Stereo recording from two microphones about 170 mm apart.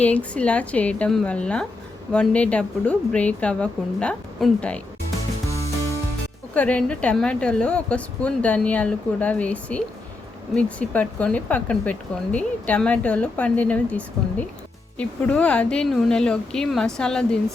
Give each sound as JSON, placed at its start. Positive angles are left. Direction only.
{"t": 0.0, "sound": "speech", "side_deg": 10}
{"t": 5.5, "sound": "music", "side_deg": 20}
{"t": 6.5, "sound": "a woman's voice", "side_deg": 10}